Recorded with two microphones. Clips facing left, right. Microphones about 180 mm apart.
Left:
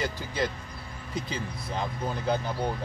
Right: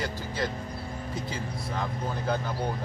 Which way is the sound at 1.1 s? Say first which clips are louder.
Left 3 dB; 20° left (ahead or behind).